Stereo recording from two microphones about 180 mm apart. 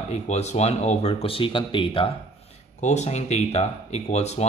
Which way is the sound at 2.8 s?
40° left (ahead or behind).